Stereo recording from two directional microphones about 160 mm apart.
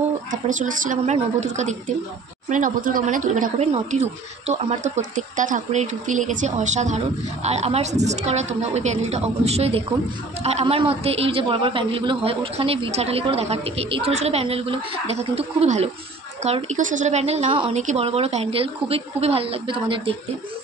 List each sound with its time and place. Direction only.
0.3 s speech: 55° right (ahead or behind)
2.5 s a man's voice: 55° right (ahead or behind); by 20.2 s 35° right (ahead or behind)